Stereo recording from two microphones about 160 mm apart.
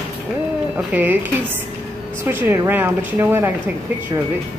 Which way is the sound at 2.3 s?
15° right (ahead or behind).